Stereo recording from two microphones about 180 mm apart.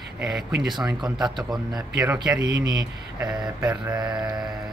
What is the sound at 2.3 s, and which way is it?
Speech, 20° right (ahead or behind).